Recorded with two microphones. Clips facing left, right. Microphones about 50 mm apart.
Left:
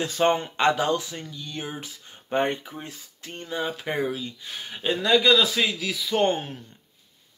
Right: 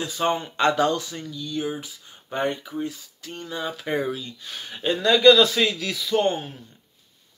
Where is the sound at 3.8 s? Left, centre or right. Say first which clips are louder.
Right 1 dB; centre.